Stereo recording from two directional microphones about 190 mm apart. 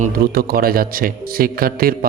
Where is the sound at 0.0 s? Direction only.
50° right (ahead or behind).